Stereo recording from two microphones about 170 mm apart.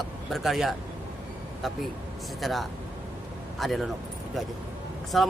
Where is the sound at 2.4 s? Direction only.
Centre (ahead or behind).